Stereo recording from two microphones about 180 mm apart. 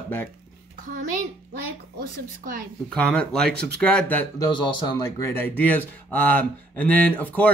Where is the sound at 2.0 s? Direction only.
55° right (ahead or behind).